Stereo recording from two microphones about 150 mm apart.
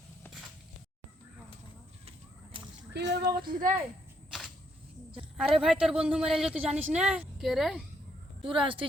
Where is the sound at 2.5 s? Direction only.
35° right (ahead or behind).